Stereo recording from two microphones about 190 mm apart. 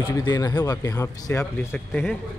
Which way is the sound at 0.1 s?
20° left (ahead or behind).